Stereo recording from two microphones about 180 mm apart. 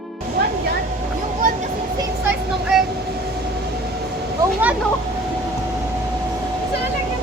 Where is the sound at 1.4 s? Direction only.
50° right (ahead or behind).